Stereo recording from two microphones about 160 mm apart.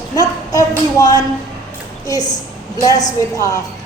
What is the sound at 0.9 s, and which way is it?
Speech, 25° left (ahead or behind).